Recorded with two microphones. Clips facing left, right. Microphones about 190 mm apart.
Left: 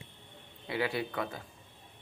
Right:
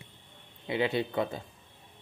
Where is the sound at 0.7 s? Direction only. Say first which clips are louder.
Right 4 dB; 20° right (ahead or behind).